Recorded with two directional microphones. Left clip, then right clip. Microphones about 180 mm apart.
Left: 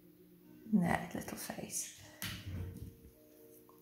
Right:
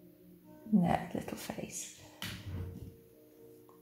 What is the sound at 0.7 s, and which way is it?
Speech, 30° right (ahead or behind).